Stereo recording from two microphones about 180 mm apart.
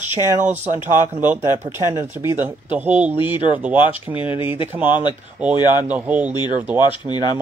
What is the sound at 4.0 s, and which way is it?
Speech, 10° right (ahead or behind).